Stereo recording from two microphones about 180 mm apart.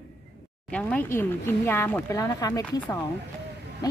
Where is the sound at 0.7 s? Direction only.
10° left (ahead or behind).